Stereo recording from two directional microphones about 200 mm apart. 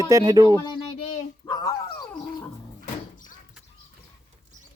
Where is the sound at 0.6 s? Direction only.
20° left (ahead or behind).